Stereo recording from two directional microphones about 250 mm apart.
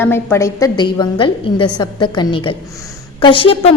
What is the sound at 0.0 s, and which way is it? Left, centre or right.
A woman's voice, centre.